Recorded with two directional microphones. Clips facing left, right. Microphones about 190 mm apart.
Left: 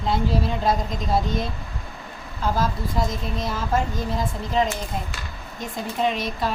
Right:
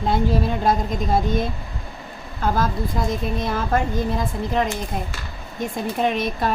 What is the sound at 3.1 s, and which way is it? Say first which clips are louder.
Speech: right 4 dB; 55° right (ahead or behind).